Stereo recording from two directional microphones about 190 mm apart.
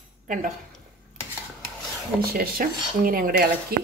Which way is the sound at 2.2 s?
50° right (ahead or behind).